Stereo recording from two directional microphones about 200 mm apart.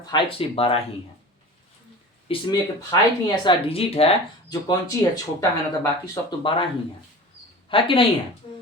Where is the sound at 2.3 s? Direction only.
30° left (ahead or behind).